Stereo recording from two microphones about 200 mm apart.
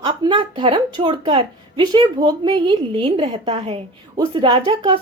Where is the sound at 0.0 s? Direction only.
25° right (ahead or behind).